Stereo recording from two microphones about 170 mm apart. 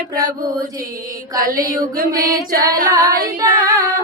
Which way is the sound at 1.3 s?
55° right (ahead or behind).